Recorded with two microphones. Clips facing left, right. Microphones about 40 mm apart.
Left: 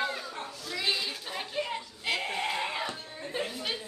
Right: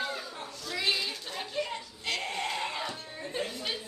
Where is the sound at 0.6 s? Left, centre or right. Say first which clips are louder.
Right 1 dB; centre.